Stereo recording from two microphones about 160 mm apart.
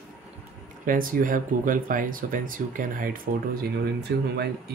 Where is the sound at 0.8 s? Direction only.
60° right (ahead or behind).